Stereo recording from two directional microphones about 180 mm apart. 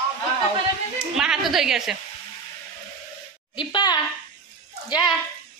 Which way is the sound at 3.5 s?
25° left (ahead or behind).